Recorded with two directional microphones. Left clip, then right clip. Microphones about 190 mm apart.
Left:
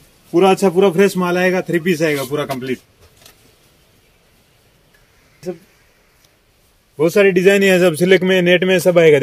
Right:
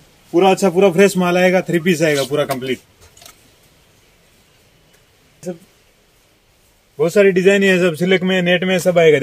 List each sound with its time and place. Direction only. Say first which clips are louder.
0.3 s a man's voice: even; centre (ahead or behind); by 2.1 s 20° right (ahead or behind)
2.1 s a man's voice: right 3 dB; 10° right (ahead or behind)
7.0 s a man's voice: even; 30° left (ahead or behind)